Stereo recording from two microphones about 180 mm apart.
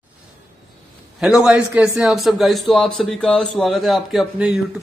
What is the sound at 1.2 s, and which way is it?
A man's voice, 5° right (ahead or behind).